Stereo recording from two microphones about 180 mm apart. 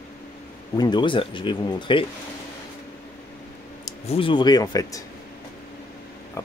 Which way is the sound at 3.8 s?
35° left (ahead or behind).